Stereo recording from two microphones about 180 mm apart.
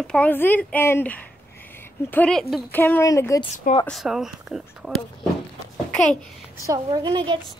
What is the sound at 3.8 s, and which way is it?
Speech, centre (ahead or behind).